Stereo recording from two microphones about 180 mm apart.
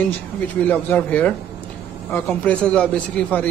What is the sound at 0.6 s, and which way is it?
A man's voice, 10° left (ahead or behind).